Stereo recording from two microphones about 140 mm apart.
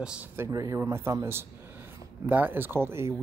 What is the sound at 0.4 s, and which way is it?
Speech, 25° right (ahead or behind).